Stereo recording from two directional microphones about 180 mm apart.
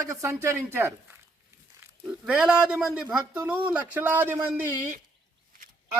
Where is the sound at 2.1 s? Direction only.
5° right (ahead or behind).